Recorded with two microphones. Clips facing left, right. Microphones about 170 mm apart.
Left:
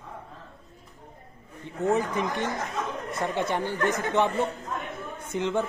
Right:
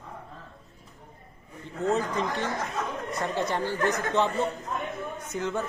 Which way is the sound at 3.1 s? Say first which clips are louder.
Left 1 dB; 20° left (ahead or behind).